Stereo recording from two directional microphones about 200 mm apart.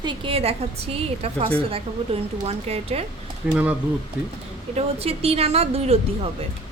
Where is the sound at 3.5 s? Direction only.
5° right (ahead or behind).